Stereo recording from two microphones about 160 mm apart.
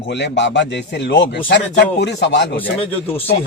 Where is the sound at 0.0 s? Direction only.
90° left.